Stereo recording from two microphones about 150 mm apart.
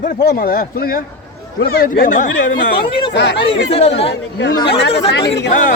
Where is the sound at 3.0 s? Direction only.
40° left (ahead or behind).